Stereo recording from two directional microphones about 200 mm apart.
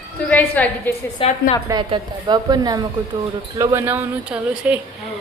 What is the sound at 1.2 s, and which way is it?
Speech, 25° left (ahead or behind).